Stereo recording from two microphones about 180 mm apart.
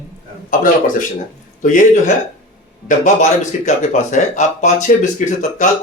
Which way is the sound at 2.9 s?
45° left (ahead or behind).